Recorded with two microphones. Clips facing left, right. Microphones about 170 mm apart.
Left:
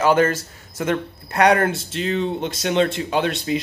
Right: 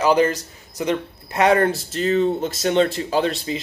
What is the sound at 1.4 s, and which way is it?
Speech, centre (ahead or behind).